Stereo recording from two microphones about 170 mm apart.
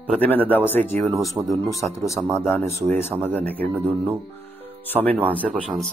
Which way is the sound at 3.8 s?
10° right (ahead or behind).